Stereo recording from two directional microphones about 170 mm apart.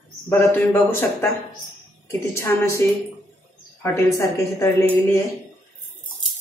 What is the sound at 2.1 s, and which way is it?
Speech, 15° left (ahead or behind).